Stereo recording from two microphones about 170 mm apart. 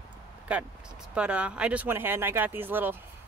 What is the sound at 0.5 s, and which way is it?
Speech, 10° right (ahead or behind).